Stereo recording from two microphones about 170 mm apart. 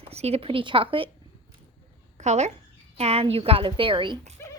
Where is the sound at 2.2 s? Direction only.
40° right (ahead or behind).